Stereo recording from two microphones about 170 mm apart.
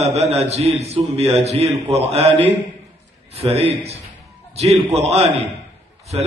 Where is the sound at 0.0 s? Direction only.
40° right (ahead or behind).